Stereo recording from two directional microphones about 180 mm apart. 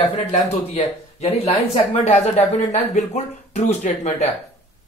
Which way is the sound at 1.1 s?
35° left (ahead or behind).